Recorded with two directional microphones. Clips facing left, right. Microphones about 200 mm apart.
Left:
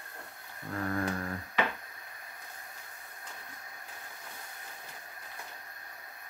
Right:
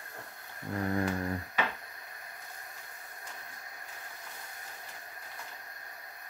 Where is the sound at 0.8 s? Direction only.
15° right (ahead or behind).